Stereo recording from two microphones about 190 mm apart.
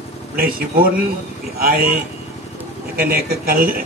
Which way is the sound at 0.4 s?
50° right (ahead or behind).